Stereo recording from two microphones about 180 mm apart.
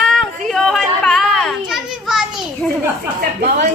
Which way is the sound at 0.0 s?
Centre (ahead or behind).